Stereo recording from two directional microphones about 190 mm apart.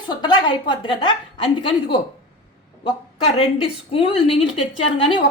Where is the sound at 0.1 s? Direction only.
25° left (ahead or behind).